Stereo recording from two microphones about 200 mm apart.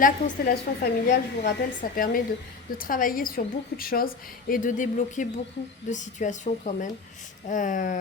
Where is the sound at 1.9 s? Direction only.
45° left (ahead or behind).